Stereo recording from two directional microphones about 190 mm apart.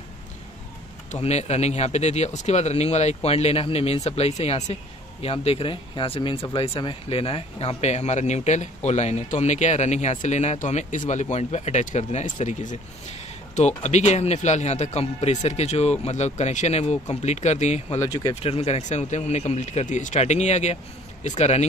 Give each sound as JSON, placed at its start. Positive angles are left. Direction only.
{"t": 1.2, "sound": "speech", "side_deg": 35}
{"t": 18.0, "sound": "speech", "side_deg": 20}
{"t": 18.3, "sound": "speech", "side_deg": 30}